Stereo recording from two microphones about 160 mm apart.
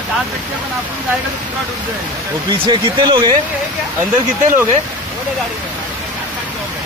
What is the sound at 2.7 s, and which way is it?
Speech, 25° right (ahead or behind).